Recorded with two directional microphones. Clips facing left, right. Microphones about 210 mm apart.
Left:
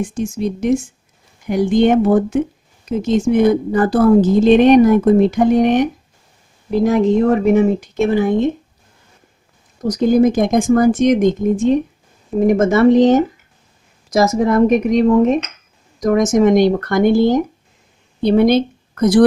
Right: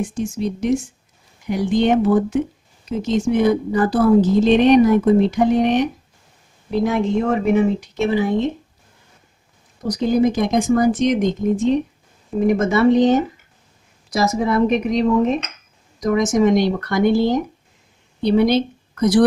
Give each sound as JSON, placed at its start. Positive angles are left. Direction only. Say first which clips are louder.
{"t": 0.1, "sound": "a woman's voice", "louder": "left 2 dB", "side_deg": 50}
{"t": 9.8, "sound": "a woman's voice", "louder": "left 4 dB", "side_deg": 50}